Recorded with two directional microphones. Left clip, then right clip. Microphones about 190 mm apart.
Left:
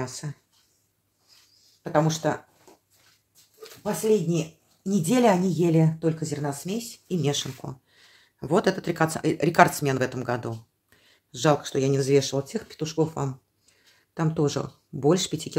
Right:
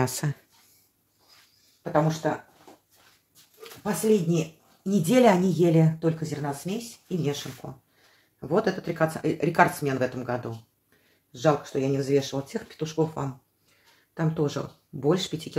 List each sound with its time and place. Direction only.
0.0 s speech: 45° right (ahead or behind)
2.2 s speech: 55° left (ahead or behind)
3.8 s speech: 35° left (ahead or behind); by 7.7 s 60° left (ahead or behind)
8.4 s speech: 45° left (ahead or behind)